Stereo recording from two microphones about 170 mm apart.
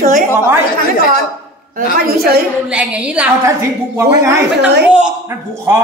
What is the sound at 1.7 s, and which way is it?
Speech, 60° right (ahead or behind).